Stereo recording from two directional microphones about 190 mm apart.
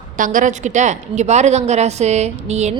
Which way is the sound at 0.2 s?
45° right (ahead or behind).